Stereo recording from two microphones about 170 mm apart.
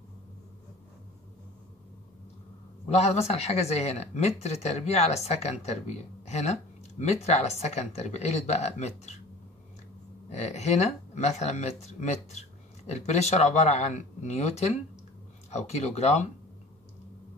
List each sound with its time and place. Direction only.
2.9 s speech: 40° left (ahead or behind)
10.3 s speech: 40° left (ahead or behind)